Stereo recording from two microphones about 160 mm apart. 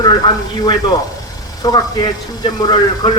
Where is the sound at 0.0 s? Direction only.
25° left (ahead or behind).